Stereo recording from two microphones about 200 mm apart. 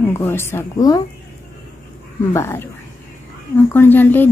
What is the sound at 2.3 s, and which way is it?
Speech, 15° left (ahead or behind).